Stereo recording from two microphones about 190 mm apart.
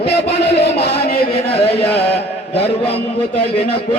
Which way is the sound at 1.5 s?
30° left (ahead or behind).